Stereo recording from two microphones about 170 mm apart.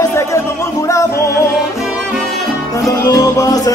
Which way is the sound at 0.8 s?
20° left (ahead or behind).